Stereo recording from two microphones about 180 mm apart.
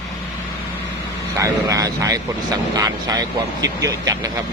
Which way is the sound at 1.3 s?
20° right (ahead or behind).